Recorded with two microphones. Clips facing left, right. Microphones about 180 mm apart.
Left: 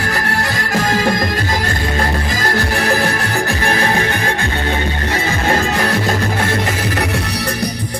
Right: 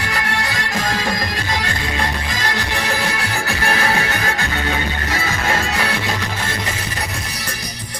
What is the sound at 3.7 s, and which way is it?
Music, 40° left (ahead or behind).